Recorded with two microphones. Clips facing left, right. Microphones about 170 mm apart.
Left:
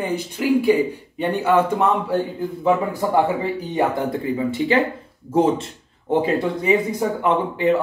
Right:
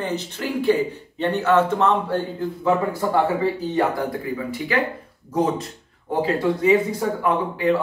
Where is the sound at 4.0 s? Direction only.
25° left (ahead or behind).